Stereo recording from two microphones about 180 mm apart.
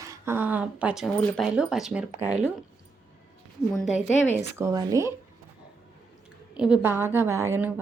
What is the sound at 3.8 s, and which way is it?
Speech, 40° left (ahead or behind).